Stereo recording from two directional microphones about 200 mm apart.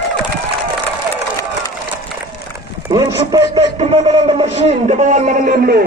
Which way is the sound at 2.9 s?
20° right (ahead or behind).